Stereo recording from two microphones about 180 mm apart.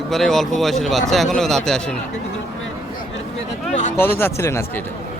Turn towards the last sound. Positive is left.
turn(degrees=15)  # may be behind; listen again after turning